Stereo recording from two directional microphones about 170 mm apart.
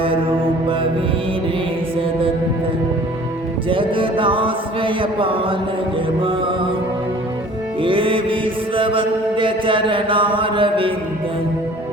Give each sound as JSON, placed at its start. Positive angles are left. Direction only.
{"t": 3.7, "sound": "music", "side_deg": -30}
{"t": 7.8, "sound": "music", "side_deg": -30}